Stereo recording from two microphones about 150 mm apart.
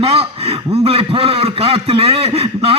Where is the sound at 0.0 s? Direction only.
40° right (ahead or behind).